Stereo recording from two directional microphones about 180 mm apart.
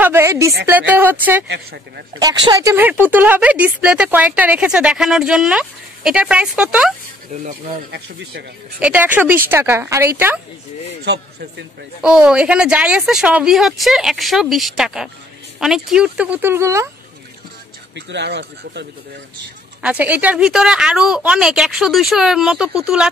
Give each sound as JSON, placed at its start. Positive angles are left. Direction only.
{"t": 0.0, "sound": "speech", "side_deg": -15}
{"t": 1.5, "sound": "speech", "side_deg": -60}
{"t": 2.1, "sound": "speech", "side_deg": -20}
{"t": 8.8, "sound": "speech", "side_deg": -10}
{"t": 12.0, "sound": "a woman's voice", "side_deg": -5}
{"t": 17.9, "sound": "speech", "side_deg": -75}
{"t": 19.8, "sound": "a woman's voice", "side_deg": -10}